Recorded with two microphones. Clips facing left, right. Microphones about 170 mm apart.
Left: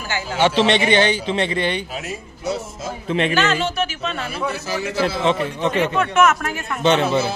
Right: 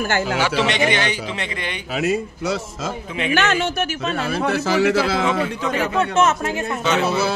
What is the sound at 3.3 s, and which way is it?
Speech, 55° right (ahead or behind).